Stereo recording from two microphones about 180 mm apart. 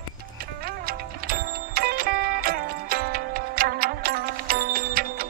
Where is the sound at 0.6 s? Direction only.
55° right (ahead or behind).